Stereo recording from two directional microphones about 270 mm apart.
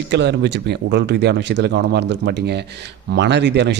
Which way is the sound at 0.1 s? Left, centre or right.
Right.